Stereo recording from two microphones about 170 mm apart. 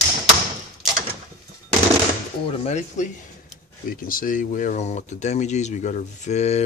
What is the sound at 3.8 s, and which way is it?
Speech, 55° left (ahead or behind).